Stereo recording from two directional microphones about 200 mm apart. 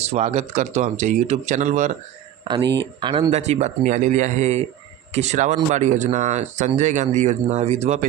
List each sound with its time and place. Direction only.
0.1 s speech: 30° right (ahead or behind)
2.7 s speech: 25° right (ahead or behind)